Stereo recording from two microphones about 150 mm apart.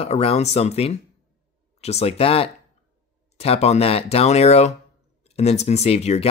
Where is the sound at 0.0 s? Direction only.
40° left (ahead or behind).